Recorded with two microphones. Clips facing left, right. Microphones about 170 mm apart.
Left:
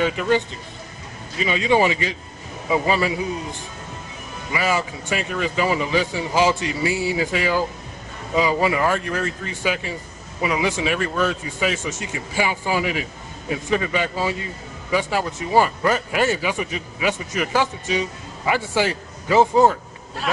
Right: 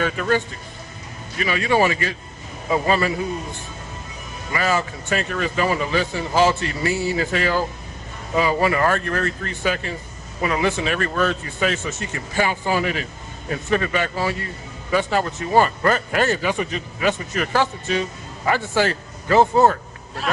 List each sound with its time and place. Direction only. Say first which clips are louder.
0.0 s speech: left 1 dB; 15° left (ahead or behind)
1.4 s speech: left 1 dB; 20° left (ahead or behind)
4.5 s speech: right 1 dB; 10° left (ahead or behind)